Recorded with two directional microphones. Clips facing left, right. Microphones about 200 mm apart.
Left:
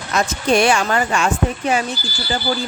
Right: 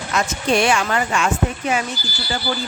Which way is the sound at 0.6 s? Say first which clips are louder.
Left 2 dB; 40° left (ahead or behind).